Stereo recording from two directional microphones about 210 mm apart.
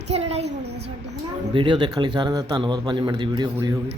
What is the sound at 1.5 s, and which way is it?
A man's voice, 20° right (ahead or behind).